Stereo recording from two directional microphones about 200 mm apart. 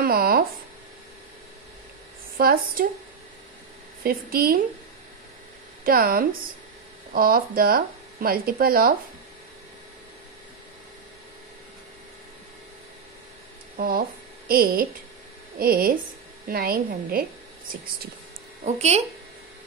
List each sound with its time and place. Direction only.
0.0 s a sound: 50° right (ahead or behind)
2.3 s speech: 45° right (ahead or behind)
4.0 s speech: 50° right (ahead or behind)
5.9 s speech: 45° right (ahead or behind)
13.7 s speech: 45° right (ahead or behind)
18.7 s speech: 35° right (ahead or behind)